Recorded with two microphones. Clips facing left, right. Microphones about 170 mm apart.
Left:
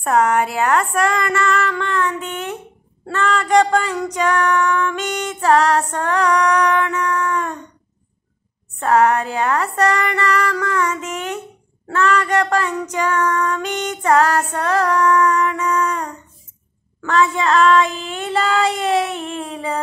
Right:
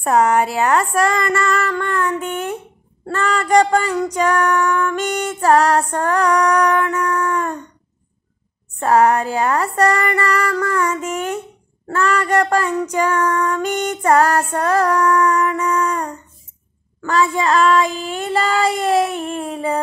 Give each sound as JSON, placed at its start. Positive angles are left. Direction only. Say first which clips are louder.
{"t": 0.0, "sound": "music", "louder": "right 1 dB", "side_deg": -5}
{"t": 2.0, "sound": "speech", "louder": "right 3 dB", "side_deg": -50}
{"t": 3.2, "sound": "music", "louder": "left 1 dB", "side_deg": -5}
{"t": 3.5, "sound": "female singing", "louder": "right 1 dB", "side_deg": -5}
{"t": 4.2, "sound": "music", "louder": "even", "side_deg": -5}
{"t": 7.0, "sound": "female singing", "louder": "right 1 dB", "side_deg": -5}
{"t": 8.7, "sound": "female singing", "louder": "right 1 dB", "side_deg": -10}
{"t": 11.9, "sound": "female singing", "louder": "even", "side_deg": -10}
{"t": 18.1, "sound": "music", "louder": "even", "side_deg": -5}